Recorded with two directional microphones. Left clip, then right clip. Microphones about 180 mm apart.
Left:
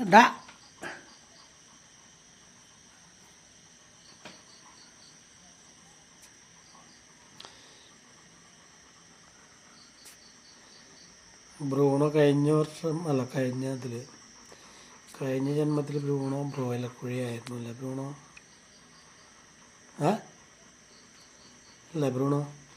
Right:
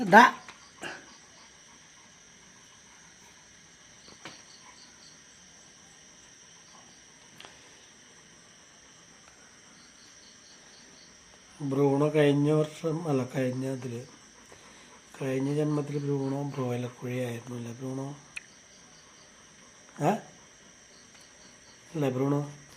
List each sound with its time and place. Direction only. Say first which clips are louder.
0.0 s speech: right 1 dB; centre (ahead or behind)
0.8 s cricket: even; 5° right (ahead or behind)
11.6 s speech: even; 5° left (ahead or behind)
15.1 s speech: even; 5° left (ahead or behind)
22.1 s speech: right 1 dB; 10° left (ahead or behind)